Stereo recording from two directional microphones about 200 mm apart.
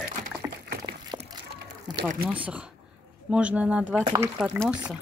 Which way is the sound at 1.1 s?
25° right (ahead or behind).